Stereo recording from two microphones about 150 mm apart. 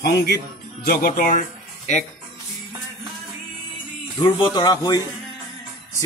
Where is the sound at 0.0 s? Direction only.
90° left.